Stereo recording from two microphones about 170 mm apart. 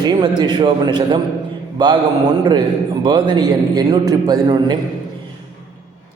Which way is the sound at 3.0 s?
25° right (ahead or behind).